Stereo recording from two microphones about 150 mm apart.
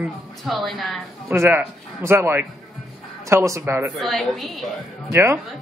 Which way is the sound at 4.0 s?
Centre (ahead or behind).